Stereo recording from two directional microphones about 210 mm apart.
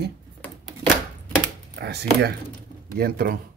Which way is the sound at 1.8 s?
50° right (ahead or behind).